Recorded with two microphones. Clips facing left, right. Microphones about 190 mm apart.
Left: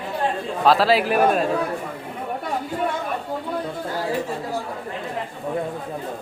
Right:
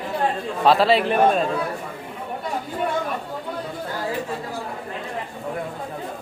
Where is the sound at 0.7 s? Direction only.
Centre (ahead or behind).